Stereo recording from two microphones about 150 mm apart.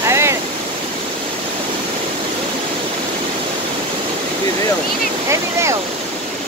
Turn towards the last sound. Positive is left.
turn(degrees=-20)  # may be behind; listen again after turning